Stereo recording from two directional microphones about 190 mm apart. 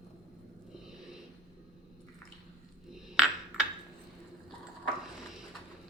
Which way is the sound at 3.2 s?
5° right (ahead or behind).